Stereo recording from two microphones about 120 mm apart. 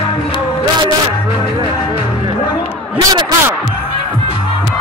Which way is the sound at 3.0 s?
35° right (ahead or behind).